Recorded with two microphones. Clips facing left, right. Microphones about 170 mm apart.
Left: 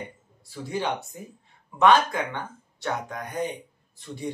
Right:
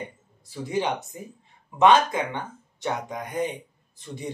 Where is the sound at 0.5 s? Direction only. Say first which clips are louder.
Right 2 dB; 20° right (ahead or behind).